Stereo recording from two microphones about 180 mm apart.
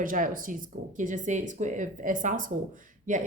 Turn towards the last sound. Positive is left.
turn(degrees=-45)  # may be behind; listen again after turning